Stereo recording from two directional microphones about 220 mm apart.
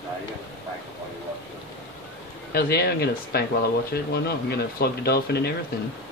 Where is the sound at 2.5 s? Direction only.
45° left (ahead or behind).